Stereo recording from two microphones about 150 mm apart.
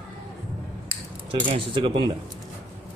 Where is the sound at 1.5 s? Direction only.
35° right (ahead or behind).